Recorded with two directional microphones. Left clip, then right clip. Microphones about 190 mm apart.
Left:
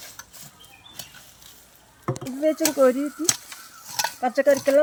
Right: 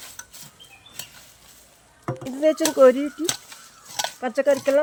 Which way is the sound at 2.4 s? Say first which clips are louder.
Right 4 dB; 45° right (ahead or behind).